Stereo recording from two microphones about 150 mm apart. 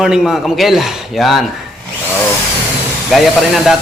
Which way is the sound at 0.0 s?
5° right (ahead or behind).